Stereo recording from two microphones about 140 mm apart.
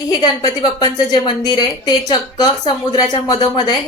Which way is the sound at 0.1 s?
30° left (ahead or behind).